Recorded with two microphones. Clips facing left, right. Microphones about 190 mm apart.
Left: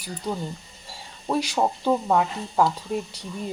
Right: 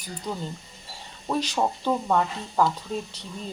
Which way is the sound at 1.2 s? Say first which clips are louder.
Left 2 dB; 10° left (ahead or behind).